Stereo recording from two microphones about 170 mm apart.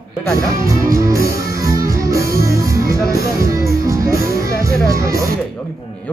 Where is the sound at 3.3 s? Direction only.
20° right (ahead or behind).